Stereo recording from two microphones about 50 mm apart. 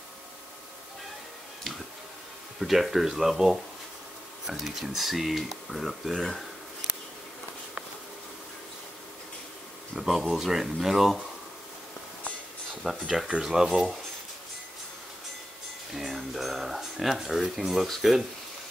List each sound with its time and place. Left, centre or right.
2.6 s speech: centre
9.9 s speech: centre
12.8 s speech: centre
15.9 s a sound: centre
17.8 s speech: centre